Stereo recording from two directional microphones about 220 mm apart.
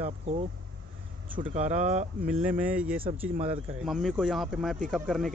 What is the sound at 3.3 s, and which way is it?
Speech, 25° right (ahead or behind).